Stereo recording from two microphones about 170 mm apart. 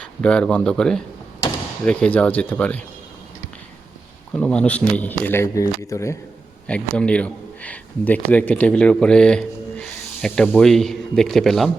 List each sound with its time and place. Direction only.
0.0 s speech: 5° left (ahead or behind)
4.3 s speech: 5° left (ahead or behind)
6.7 s a man's voice: 5° left (ahead or behind)